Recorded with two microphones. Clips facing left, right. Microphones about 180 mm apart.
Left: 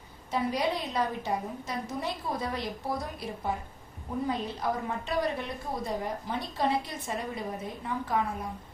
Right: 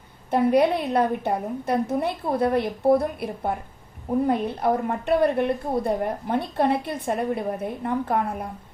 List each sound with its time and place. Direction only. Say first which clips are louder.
0.3 s a woman's voice: right 10 dB; 60° right (ahead or behind)